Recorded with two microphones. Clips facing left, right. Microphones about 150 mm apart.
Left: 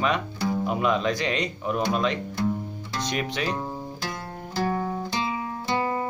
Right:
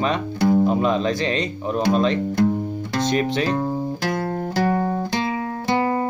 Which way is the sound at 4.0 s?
70° right (ahead or behind).